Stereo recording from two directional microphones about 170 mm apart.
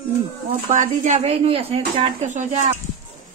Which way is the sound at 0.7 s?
45° right (ahead or behind).